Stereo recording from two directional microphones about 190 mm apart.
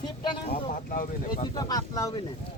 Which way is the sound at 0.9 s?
45° left (ahead or behind).